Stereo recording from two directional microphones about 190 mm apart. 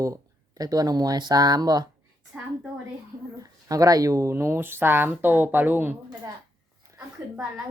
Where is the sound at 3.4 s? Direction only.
20° right (ahead or behind).